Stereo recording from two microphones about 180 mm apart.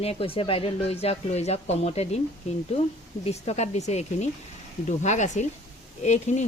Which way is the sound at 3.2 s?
40° left (ahead or behind).